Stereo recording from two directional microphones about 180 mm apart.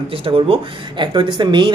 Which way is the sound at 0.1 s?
30° right (ahead or behind).